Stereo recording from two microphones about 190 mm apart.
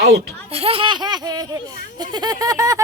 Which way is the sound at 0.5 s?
30° right (ahead or behind).